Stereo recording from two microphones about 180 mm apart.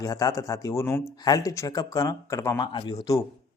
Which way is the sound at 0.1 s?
20° left (ahead or behind).